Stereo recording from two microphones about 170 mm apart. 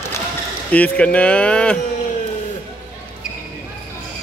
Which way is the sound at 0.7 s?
10° left (ahead or behind).